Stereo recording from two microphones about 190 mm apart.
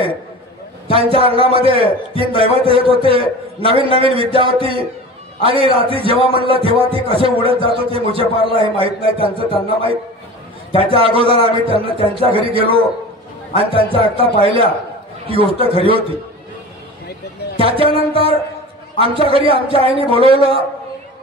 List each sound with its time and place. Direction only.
0.9 s a man's voice: 30° right (ahead or behind)
10.8 s a man's voice: 30° right (ahead or behind)
17.6 s a man's voice: 30° right (ahead or behind)